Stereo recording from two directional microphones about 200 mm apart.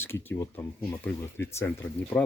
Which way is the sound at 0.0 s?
10° left (ahead or behind).